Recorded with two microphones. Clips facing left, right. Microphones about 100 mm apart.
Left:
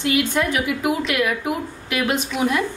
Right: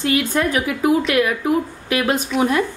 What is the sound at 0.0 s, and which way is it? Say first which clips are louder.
Speech: right 1 dB; 40° right (ahead or behind).